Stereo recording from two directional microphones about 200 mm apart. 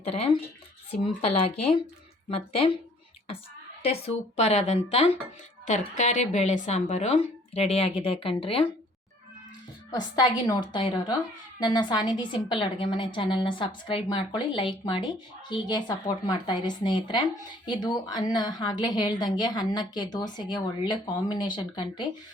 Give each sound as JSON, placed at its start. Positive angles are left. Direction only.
{"t": 0.0, "sound": "a woman's voice", "side_deg": 30}
{"t": 3.8, "sound": "a woman's voice", "side_deg": 30}
{"t": 9.9, "sound": "a woman's voice", "side_deg": 20}